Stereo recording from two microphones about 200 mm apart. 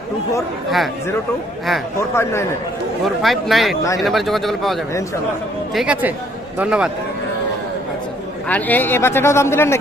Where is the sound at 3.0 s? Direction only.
Centre (ahead or behind).